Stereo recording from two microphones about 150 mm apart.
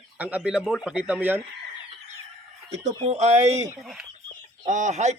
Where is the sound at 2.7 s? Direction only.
45° right (ahead or behind).